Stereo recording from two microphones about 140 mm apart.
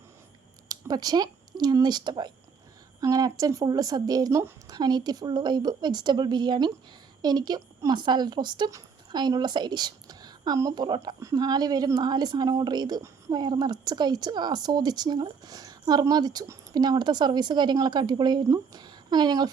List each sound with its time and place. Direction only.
0.7 s speech: 30° right (ahead or behind)